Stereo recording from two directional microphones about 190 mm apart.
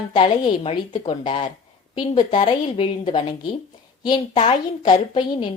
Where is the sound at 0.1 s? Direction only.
25° left (ahead or behind).